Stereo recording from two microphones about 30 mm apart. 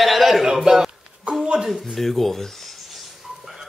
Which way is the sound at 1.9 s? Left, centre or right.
Centre.